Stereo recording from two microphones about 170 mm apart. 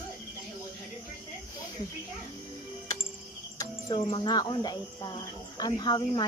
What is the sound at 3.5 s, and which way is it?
Speech, 30° left (ahead or behind).